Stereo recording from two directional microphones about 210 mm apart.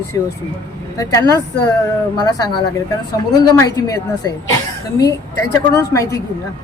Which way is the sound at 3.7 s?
15° left (ahead or behind).